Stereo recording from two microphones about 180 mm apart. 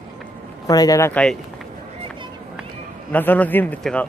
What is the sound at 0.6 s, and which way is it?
Speech, 20° left (ahead or behind).